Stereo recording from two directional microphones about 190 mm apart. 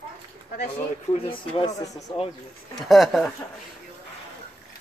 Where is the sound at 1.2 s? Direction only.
30° left (ahead or behind).